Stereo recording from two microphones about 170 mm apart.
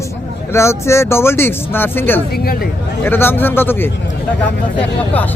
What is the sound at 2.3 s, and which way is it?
Speech, 65° left (ahead or behind).